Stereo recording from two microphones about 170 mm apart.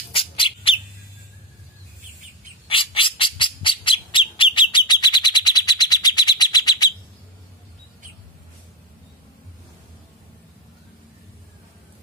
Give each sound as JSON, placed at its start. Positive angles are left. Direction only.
{"t": 0.1, "sound": "bird", "side_deg": 30}
{"t": 2.7, "sound": "squawk", "side_deg": 30}